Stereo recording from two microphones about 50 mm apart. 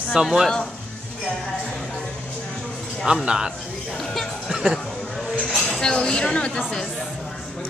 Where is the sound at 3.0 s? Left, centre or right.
Centre.